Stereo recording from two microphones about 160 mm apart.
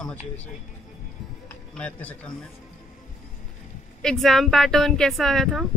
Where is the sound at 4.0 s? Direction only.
Centre (ahead or behind).